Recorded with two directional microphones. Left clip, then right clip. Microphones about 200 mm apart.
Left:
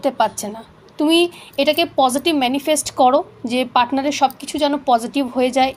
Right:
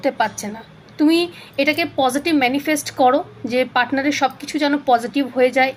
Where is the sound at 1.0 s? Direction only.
30° left (ahead or behind).